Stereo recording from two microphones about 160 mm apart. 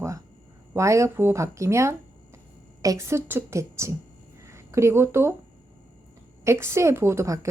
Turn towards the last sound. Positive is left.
turn(degrees=-20)  # may be behind; listen again after turning